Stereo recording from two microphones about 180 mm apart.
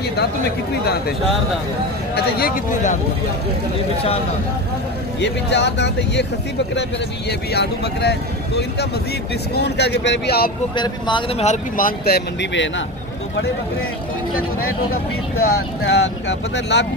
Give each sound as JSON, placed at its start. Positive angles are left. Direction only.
{"t": 2.1, "sound": "speech", "side_deg": 55}
{"t": 5.2, "sound": "speech", "side_deg": 75}
{"t": 10.8, "sound": "speech", "side_deg": 25}
{"t": 11.7, "sound": "speech", "side_deg": 55}
{"t": 14.9, "sound": "speech", "side_deg": 60}